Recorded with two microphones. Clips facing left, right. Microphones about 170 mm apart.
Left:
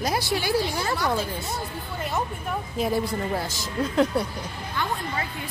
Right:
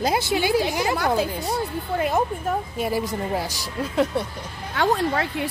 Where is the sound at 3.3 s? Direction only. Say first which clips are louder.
Right 2 dB; 15° right (ahead or behind).